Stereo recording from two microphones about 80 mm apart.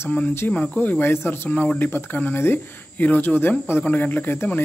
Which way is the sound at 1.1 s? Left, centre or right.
Left.